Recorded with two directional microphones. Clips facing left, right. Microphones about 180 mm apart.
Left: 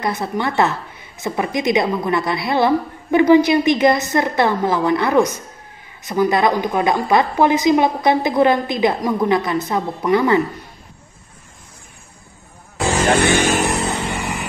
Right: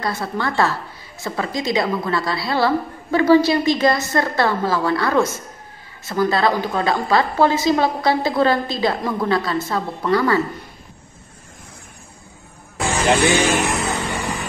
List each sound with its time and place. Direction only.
0.0 s a woman's voice: 20° left (ahead or behind)
13.2 s vehicle: 55° left (ahead or behind)
13.7 s vehicle: 30° left (ahead or behind)